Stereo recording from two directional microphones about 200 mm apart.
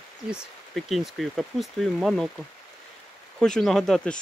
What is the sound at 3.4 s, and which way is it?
Speech, 5° left (ahead or behind).